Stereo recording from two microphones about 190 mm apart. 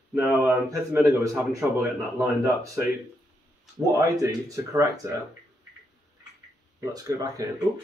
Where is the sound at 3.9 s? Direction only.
15° right (ahead or behind).